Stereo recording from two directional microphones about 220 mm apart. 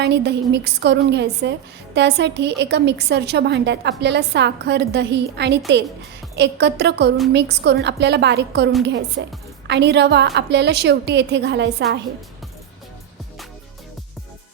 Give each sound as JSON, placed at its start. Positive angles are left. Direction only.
{"t": 0.0, "sound": "a woman's voice", "side_deg": -50}